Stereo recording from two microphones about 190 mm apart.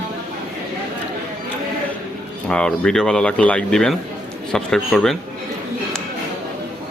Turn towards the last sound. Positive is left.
turn(degrees=5)  # may be behind; listen again after turning